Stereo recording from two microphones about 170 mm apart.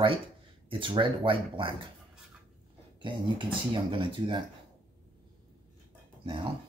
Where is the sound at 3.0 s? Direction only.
30° right (ahead or behind).